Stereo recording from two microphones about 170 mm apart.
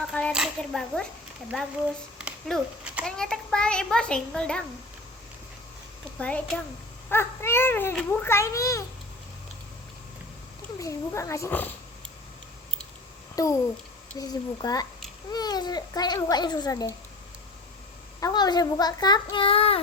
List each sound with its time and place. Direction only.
0.1 s a child's voice: 5° left (ahead or behind)
2.1 s a child's voice: 5° right (ahead or behind)
6.1 s speech: 5° left (ahead or behind)
10.8 s speech: 20° left (ahead or behind)
13.3 s a child's voice: 20° left (ahead or behind)
18.2 s a child's voice: 25° left (ahead or behind)